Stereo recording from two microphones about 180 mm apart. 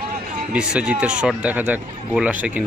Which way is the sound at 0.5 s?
5° right (ahead or behind).